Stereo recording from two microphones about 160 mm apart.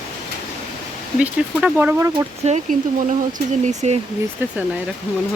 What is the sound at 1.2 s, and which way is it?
Speech, 10° right (ahead or behind).